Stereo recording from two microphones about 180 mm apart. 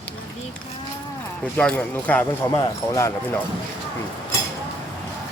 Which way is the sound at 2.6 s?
20° left (ahead or behind).